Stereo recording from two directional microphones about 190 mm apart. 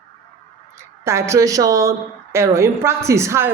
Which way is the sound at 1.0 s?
15° right (ahead or behind).